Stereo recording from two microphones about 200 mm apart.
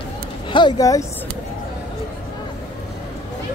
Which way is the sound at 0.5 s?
25° left (ahead or behind).